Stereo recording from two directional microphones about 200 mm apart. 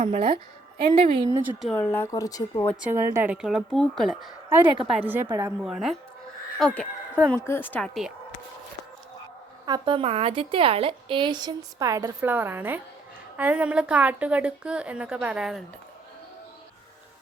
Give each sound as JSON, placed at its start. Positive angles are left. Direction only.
{"t": 0.0, "sound": "a woman's voice", "side_deg": -45}
{"t": 0.9, "sound": "a woman's voice", "side_deg": -25}
{"t": 1.6, "sound": "a woman's voice", "side_deg": 10}
{"t": 2.8, "sound": "a woman's voice", "side_deg": -15}
{"t": 5.6, "sound": "a woman's voice", "side_deg": 0}
{"t": 9.6, "sound": "a woman's voice", "side_deg": -25}